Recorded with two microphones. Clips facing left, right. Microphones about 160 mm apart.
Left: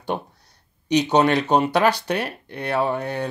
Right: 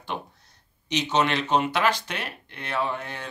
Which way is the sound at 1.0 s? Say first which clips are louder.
Left 4 dB; 40° left (ahead or behind).